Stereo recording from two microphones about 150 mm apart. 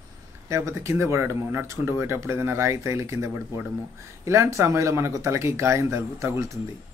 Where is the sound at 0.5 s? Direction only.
20° right (ahead or behind).